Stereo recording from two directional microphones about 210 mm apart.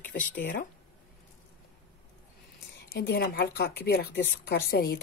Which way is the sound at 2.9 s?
50° left (ahead or behind).